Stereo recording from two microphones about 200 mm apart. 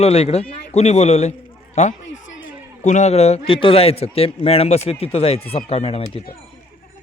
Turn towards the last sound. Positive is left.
turn(degrees=30)  # may be behind; listen again after turning